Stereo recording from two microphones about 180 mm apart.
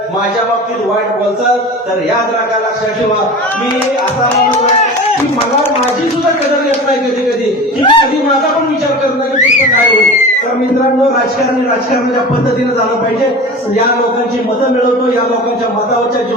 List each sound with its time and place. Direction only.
7.8 s speech: 25° left (ahead or behind)